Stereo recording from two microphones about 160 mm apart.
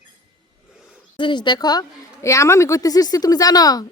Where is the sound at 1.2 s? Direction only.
30° left (ahead or behind).